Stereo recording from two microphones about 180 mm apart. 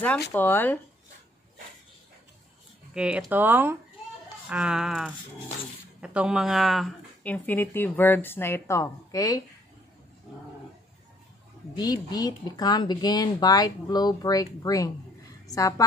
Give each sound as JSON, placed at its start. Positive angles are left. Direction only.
{"t": 0.3, "sound": "a woman's voice", "side_deg": 10}
{"t": 2.9, "sound": "speech", "side_deg": -5}
{"t": 7.3, "sound": "a woman's voice", "side_deg": 15}
{"t": 11.7, "sound": "speech", "side_deg": 20}
{"t": 15.4, "sound": "a sound", "side_deg": 20}